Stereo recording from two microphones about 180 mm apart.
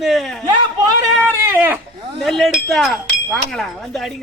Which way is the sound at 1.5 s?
10° right (ahead or behind).